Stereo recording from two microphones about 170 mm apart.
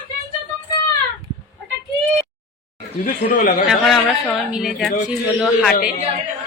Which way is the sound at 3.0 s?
55° left (ahead or behind).